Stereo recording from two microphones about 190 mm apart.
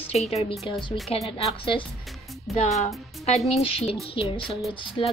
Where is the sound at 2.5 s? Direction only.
Centre (ahead or behind).